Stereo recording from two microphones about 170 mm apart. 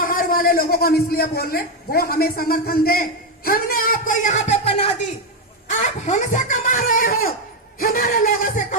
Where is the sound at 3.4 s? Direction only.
55° left (ahead or behind).